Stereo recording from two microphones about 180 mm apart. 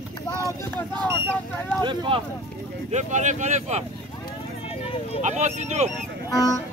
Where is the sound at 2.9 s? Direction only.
40° right (ahead or behind).